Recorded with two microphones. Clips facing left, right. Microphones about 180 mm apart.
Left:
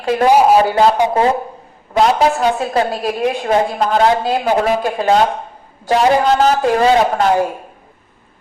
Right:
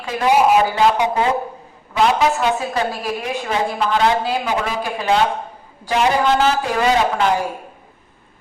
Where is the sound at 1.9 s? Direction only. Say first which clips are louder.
Left 3 dB; 40° left (ahead or behind).